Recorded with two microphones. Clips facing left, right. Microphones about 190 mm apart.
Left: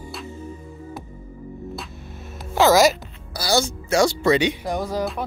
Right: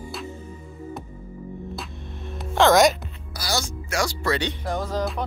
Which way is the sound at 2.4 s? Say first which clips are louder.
Left 1 dB; 5° left (ahead or behind).